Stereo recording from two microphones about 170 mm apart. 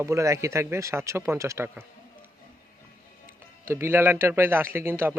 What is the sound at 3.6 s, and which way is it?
Speech, 15° right (ahead or behind).